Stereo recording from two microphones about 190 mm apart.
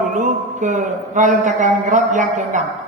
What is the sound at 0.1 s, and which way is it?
A man's voice, 40° right (ahead or behind).